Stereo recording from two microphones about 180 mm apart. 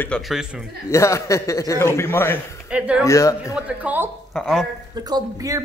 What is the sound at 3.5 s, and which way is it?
Speech, 5° right (ahead or behind).